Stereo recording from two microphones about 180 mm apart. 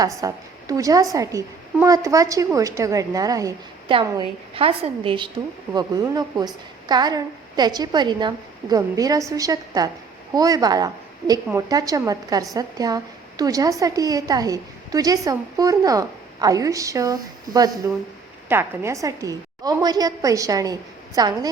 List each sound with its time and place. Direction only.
0.0 s a woman's voice: 20° right (ahead or behind)